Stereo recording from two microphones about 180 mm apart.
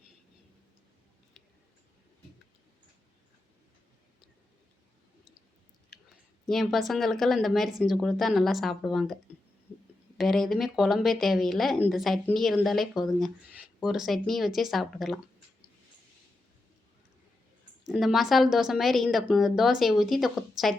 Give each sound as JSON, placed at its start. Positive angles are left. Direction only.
{"t": 6.4, "sound": "speech", "side_deg": 0}
{"t": 10.2, "sound": "speech", "side_deg": 0}
{"t": 17.8, "sound": "speech", "side_deg": 0}